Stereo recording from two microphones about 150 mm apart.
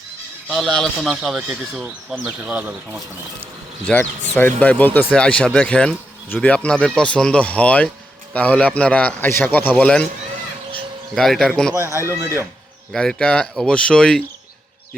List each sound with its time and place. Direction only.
0.4 s speech: 5° left (ahead or behind); by 3.0 s 10° right (ahead or behind)
3.9 s speech: 5° left (ahead or behind)
11.1 s speech: centre (ahead or behind)
11.7 s speech: 20° right (ahead or behind)
12.9 s speech: 5° left (ahead or behind)